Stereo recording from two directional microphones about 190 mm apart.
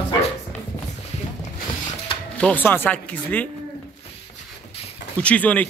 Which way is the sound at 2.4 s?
10° left (ahead or behind).